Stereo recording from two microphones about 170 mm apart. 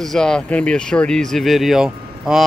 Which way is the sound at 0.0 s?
5° left (ahead or behind).